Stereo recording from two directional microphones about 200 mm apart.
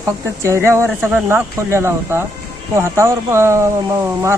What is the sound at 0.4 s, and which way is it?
Speech, 15° right (ahead or behind).